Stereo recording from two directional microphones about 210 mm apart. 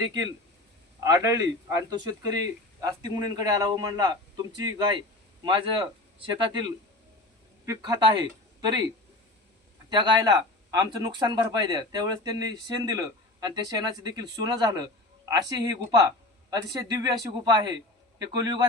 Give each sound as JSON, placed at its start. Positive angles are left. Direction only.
{"t": 0.9, "sound": "speech", "side_deg": -15}
{"t": 7.6, "sound": "speech", "side_deg": -15}
{"t": 9.9, "sound": "speech", "side_deg": -20}